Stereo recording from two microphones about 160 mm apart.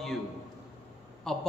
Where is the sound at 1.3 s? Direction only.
5° left (ahead or behind).